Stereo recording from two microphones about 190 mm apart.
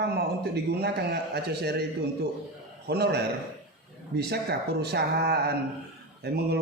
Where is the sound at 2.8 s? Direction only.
60° right (ahead or behind).